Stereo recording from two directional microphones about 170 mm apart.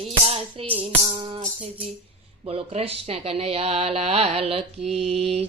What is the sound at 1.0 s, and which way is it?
Speech, 30° right (ahead or behind).